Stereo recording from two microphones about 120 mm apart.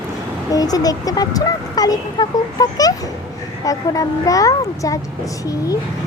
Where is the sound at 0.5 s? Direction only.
30° left (ahead or behind).